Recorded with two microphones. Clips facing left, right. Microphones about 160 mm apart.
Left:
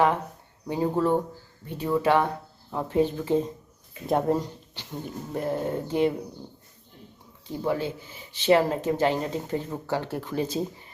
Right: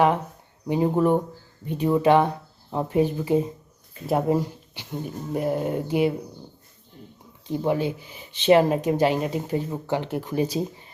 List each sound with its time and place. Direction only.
0.7 s speech: 15° right (ahead or behind)
7.4 s speech: 20° right (ahead or behind)